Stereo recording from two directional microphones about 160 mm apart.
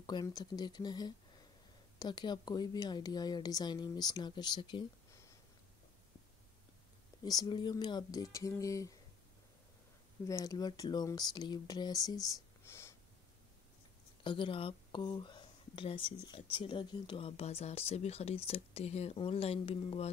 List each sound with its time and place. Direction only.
0.0 s speech: 25° left (ahead or behind)
7.2 s speech: 25° left (ahead or behind)
10.2 s speech: 20° left (ahead or behind)
14.2 s speech: 30° left (ahead or behind)